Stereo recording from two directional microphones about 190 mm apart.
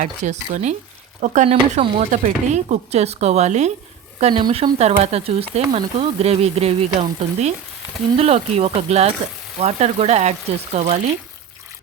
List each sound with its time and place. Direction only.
0.0 s speech: 40° right (ahead or behind)
4.2 s speech: 25° right (ahead or behind)